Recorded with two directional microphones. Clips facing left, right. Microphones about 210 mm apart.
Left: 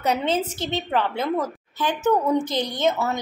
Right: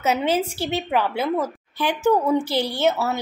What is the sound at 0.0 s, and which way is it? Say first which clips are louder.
A woman's voice: right 2 dB; 5° right (ahead or behind).